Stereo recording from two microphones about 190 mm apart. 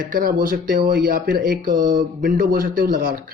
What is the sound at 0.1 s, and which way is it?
Speech, 50° right (ahead or behind).